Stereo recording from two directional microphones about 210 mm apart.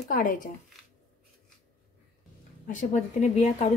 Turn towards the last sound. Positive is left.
turn(degrees=35)  # may be behind; listen again after turning